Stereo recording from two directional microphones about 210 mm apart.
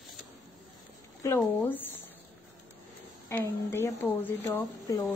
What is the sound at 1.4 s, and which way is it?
Speech, 5° left (ahead or behind).